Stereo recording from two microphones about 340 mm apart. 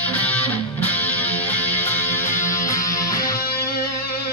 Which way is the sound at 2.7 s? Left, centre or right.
Centre.